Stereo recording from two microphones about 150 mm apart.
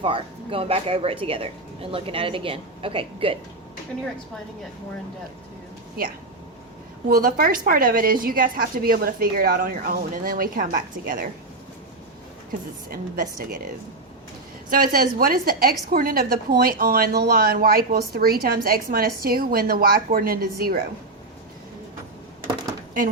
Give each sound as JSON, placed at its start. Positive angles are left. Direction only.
{"t": 0.0, "sound": "speech", "side_deg": -35}
{"t": 7.1, "sound": "a woman's voice", "side_deg": -75}
{"t": 12.5, "sound": "a woman's voice", "side_deg": -65}
{"t": 14.7, "sound": "a woman's voice", "side_deg": -80}